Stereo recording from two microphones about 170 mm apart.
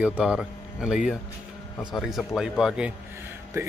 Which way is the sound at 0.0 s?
5° right (ahead or behind).